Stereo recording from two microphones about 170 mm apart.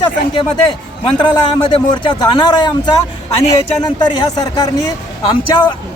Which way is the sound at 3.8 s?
25° left (ahead or behind).